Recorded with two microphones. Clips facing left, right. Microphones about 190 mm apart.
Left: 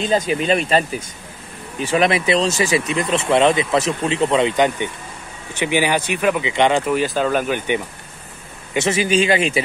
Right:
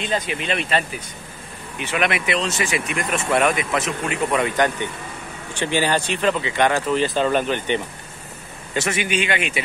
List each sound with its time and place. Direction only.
0.0 s speech: 40° left (ahead or behind); by 7.8 s 10° left (ahead or behind)
8.7 s speech: 30° left (ahead or behind)